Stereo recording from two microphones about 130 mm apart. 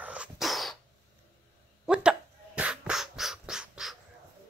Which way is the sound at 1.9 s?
5° right (ahead or behind).